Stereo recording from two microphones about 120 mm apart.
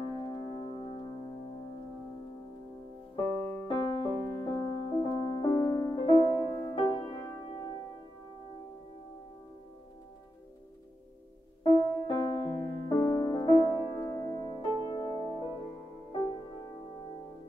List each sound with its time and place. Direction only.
0.0 s music: 35° left (ahead or behind)
3.6 s music: 45° left (ahead or behind)
11.6 s music: 40° left (ahead or behind)